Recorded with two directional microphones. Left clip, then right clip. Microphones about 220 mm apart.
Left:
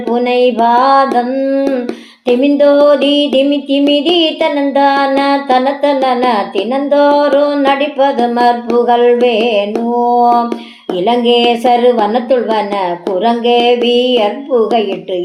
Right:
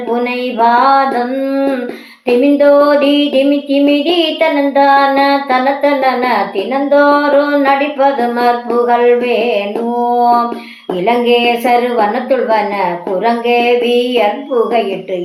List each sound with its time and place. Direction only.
0.3 s music: 40° left (ahead or behind)
2.2 s a sound: 45° left (ahead or behind)
3.8 s music: 40° left (ahead or behind)
13.2 s music: 40° left (ahead or behind)